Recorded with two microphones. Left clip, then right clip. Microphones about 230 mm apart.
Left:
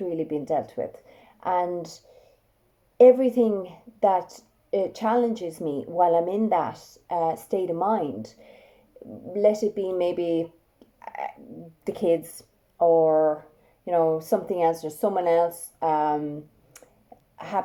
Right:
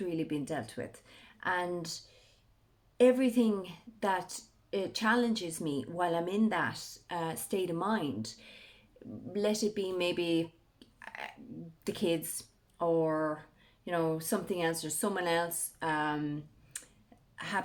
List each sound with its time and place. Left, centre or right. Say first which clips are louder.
0.1 s speech: left 9 dB; right
3.0 s speech: left 10 dB; right
9.7 s speech: left 7 dB; right
17.3 s a sound: left 6 dB; right